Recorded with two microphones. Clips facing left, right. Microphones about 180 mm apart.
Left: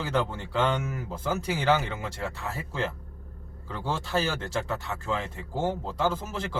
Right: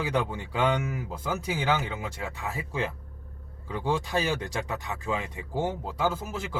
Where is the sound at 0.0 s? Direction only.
15° right (ahead or behind).